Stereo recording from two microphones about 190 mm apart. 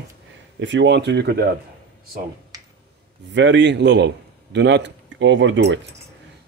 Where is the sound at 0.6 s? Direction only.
70° right (ahead or behind).